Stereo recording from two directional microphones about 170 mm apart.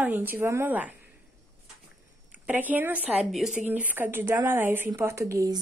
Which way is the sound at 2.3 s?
10° right (ahead or behind).